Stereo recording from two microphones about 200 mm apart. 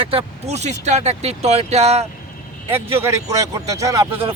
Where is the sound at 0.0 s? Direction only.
30° right (ahead or behind).